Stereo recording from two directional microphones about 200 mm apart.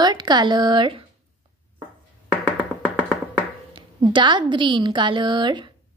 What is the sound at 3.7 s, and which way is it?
A woman's voice, 25° right (ahead or behind).